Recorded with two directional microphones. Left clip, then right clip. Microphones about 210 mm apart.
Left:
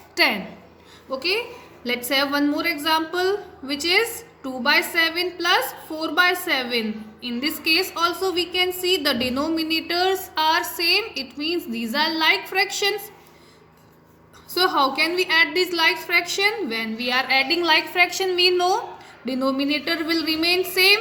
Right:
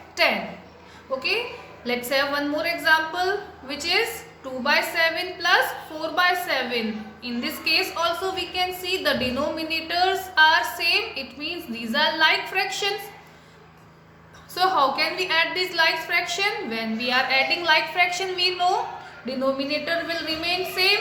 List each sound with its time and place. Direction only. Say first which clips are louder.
0.2 s a woman's voice: left 2 dB; 50° left (ahead or behind)
1.8 s a woman's voice: left 1 dB; 50° left (ahead or behind)
14.5 s a woman's voice: left 1 dB; 50° left (ahead or behind)